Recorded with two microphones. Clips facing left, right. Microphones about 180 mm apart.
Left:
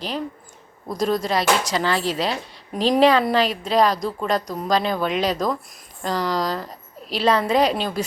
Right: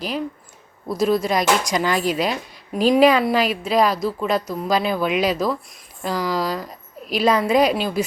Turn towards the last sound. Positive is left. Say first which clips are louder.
# right 2 dB
turn(degrees=-10)  # may be behind; listen again after turning